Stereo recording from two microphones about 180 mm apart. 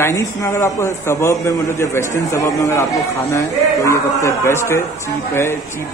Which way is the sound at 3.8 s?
15° left (ahead or behind).